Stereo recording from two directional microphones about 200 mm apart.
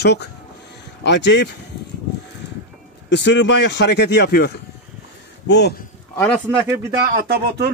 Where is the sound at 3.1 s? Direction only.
60° left (ahead or behind).